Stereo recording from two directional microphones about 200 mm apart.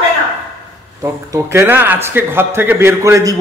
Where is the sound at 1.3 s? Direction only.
10° right (ahead or behind).